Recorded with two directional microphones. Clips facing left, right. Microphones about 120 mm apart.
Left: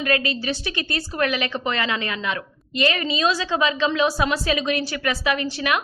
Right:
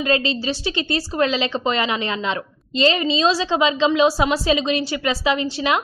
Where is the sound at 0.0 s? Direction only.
25° right (ahead or behind).